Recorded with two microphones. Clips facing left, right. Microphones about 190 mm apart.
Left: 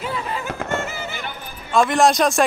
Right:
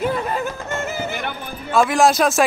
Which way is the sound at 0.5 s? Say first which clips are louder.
Left 2 dB; 60° left (ahead or behind).